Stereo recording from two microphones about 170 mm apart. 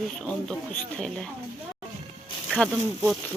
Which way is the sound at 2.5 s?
5° left (ahead or behind).